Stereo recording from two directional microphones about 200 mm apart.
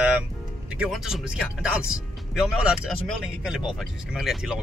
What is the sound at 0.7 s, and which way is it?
A man's voice, centre (ahead or behind).